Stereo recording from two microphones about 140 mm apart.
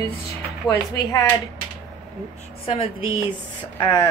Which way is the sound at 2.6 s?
45° left (ahead or behind).